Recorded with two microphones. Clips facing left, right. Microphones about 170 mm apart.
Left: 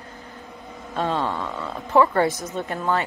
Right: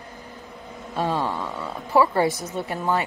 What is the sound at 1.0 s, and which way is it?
A woman's voice, 10° right (ahead or behind).